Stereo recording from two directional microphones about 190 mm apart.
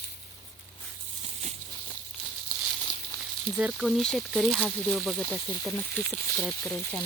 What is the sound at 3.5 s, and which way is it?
Speech, 5° right (ahead or behind).